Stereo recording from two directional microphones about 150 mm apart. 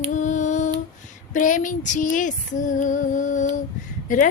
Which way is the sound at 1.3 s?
60° left (ahead or behind).